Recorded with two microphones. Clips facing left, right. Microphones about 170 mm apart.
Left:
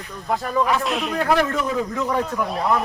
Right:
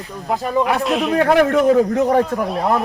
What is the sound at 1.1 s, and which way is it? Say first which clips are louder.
A man's voice: right 7 dB; 60° right (ahead or behind).